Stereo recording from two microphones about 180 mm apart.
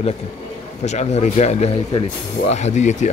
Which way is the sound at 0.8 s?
40° left (ahead or behind).